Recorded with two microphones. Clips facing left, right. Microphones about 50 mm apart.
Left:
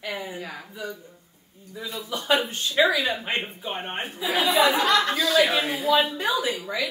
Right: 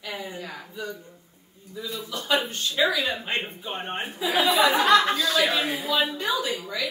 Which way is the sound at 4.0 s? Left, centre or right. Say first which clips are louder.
Right 1 dB; centre.